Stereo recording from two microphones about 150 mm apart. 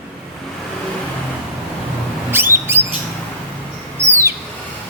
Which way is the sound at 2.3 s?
15° right (ahead or behind).